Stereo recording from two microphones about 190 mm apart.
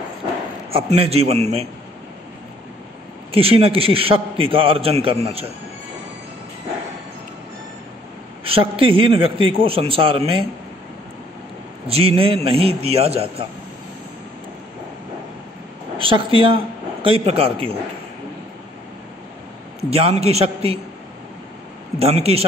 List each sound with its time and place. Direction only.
0.7 s a man's voice: 30° right (ahead or behind)
3.3 s a man's voice: 30° right (ahead or behind)
8.5 s a man's voice: 30° right (ahead or behind)
11.9 s a man's voice: 30° right (ahead or behind)
16.0 s a man's voice: 25° right (ahead or behind)
19.8 s a man's voice: 30° right (ahead or behind)
21.9 s a man's voice: 30° right (ahead or behind)